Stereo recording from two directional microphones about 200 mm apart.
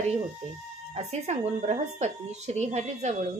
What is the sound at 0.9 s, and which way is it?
A woman's voice, 35° right (ahead or behind).